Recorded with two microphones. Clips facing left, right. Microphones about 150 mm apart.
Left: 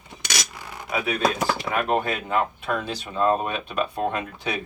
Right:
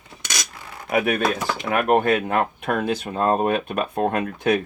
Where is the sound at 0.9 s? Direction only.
60° right (ahead or behind).